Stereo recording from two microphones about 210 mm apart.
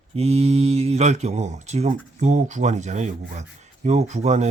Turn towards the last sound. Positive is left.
turn(degrees=-30)  # may be behind; listen again after turning